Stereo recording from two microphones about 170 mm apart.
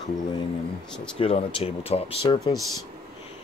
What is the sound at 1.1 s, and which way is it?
Speech, 35° left (ahead or behind).